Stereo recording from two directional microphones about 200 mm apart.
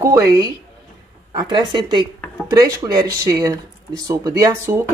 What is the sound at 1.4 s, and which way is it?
A woman's voice, 20° right (ahead or behind).